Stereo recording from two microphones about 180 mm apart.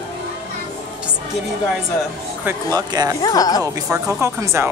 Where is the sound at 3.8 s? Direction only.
10° right (ahead or behind).